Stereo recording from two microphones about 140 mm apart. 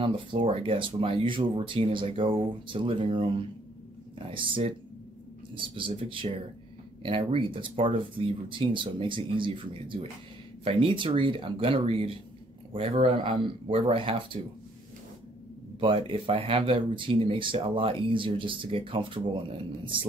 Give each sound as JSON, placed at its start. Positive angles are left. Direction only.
{"t": 0.0, "sound": "speech", "side_deg": -40}
{"t": 15.8, "sound": "speech", "side_deg": -40}